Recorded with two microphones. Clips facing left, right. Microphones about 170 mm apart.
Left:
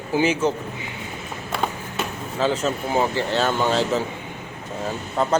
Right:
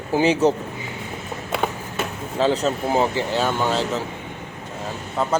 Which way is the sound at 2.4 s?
35° right (ahead or behind).